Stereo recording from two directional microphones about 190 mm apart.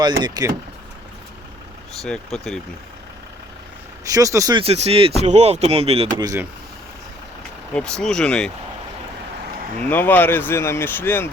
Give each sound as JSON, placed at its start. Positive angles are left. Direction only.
{"t": 0.0, "sound": "speech", "side_deg": -20}
{"t": 2.0, "sound": "speech", "side_deg": 5}
{"t": 4.0, "sound": "speech", "side_deg": -15}
{"t": 4.6, "sound": "speech", "side_deg": -30}
{"t": 6.1, "sound": "speech", "side_deg": -20}
{"t": 7.7, "sound": "speech", "side_deg": 5}
{"t": 9.9, "sound": "speech", "side_deg": 10}